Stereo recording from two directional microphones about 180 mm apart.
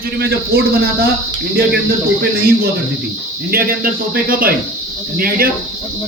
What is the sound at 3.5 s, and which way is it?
Speech, 55° right (ahead or behind).